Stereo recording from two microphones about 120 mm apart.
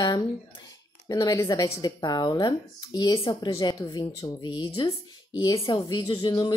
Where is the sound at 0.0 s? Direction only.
35° left (ahead or behind).